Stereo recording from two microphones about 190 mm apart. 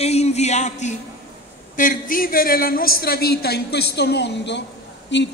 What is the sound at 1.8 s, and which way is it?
A woman's voice, 45° left (ahead or behind).